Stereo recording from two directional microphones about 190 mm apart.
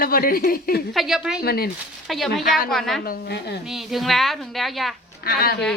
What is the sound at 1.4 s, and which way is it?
Speech, 55° left (ahead or behind).